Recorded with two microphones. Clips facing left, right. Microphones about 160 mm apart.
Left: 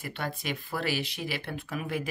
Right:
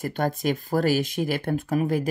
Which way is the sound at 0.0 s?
45° right (ahead or behind).